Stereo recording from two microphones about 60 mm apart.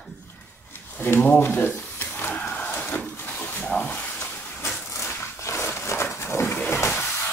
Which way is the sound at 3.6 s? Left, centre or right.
Left.